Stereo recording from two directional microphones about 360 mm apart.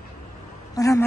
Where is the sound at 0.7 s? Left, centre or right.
Centre.